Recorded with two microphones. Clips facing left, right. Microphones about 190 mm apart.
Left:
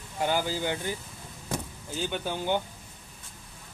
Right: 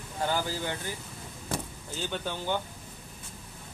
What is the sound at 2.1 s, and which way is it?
Speech, 15° left (ahead or behind).